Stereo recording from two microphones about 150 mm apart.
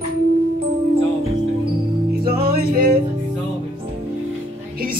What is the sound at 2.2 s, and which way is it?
Music, 80° right.